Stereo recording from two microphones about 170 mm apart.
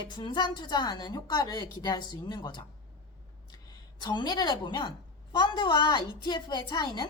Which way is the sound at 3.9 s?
25° left (ahead or behind).